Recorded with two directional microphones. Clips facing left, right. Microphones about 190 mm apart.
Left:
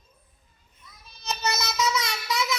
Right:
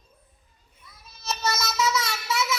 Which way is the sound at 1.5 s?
15° left (ahead or behind).